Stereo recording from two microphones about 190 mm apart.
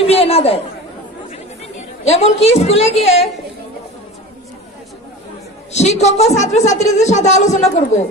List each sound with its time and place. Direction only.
0.0 s chatter: 30° left (ahead or behind)
2.0 s a woman's voice: 35° left (ahead or behind)
5.7 s a woman's voice: 35° left (ahead or behind)